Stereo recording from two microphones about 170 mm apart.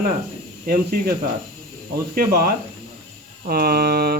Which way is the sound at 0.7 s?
55° right (ahead or behind).